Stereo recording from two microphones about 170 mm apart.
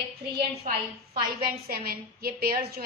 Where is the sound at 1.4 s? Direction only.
60° right (ahead or behind).